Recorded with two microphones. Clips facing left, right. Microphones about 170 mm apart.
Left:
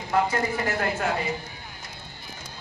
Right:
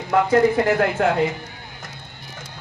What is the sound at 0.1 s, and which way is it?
Speech, 65° right (ahead or behind).